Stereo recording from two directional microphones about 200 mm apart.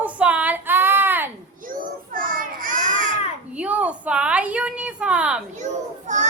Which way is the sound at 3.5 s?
5° right (ahead or behind).